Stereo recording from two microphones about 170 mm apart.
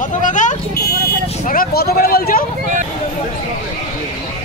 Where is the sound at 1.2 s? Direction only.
55° left (ahead or behind).